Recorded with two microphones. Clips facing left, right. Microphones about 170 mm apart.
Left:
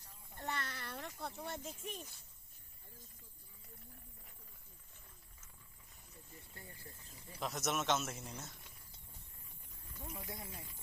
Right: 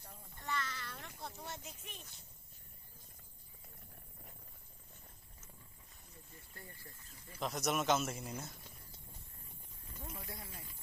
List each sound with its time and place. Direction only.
0.3 s a sound: 55° left (ahead or behind)
1.8 s speech: 45° left (ahead or behind)
7.3 s a man's voice: centre (ahead or behind)
10.0 s speech: 15° left (ahead or behind)